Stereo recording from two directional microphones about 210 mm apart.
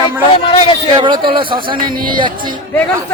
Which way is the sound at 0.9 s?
20° right (ahead or behind).